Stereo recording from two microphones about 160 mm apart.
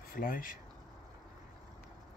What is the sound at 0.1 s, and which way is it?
Speech, 60° left (ahead or behind).